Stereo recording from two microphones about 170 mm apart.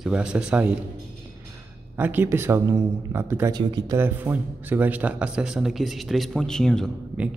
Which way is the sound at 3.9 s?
15° right (ahead or behind).